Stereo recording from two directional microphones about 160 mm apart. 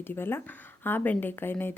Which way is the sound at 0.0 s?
15° left (ahead or behind).